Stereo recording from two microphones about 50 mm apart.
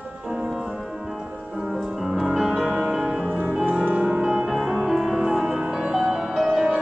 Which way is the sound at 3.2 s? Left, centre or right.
Right.